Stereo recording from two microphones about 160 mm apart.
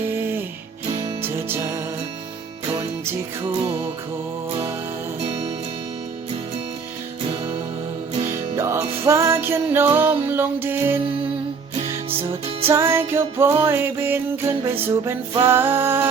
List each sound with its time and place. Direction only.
1.2 s music: 15° right (ahead or behind)
8.5 s music: 15° right (ahead or behind)
12.6 s music: 15° right (ahead or behind)